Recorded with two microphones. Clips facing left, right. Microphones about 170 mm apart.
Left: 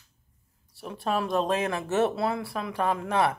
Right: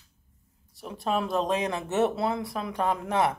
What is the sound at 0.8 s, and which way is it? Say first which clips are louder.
Speech: even; 20° right (ahead or behind).